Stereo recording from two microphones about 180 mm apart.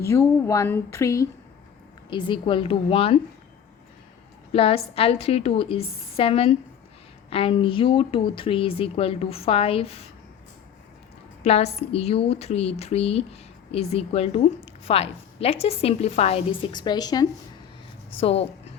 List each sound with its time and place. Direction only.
0.0 s speech: 15° left (ahead or behind)
2.0 s a woman's voice: 25° left (ahead or behind)
4.5 s a woman's voice: 30° left (ahead or behind)
11.4 s a woman's voice: 35° left (ahead or behind)
18.2 s a woman's voice: 35° left (ahead or behind)